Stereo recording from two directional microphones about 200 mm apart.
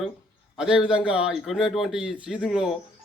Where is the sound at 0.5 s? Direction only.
5° right (ahead or behind).